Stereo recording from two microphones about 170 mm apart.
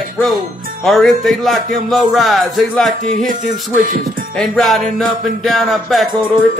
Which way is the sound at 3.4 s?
50° right (ahead or behind).